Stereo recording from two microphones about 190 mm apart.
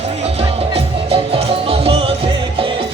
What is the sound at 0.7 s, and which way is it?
Music, 30° right (ahead or behind).